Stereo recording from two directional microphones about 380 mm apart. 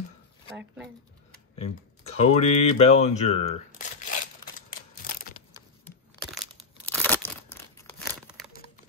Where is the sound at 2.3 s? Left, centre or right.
Centre.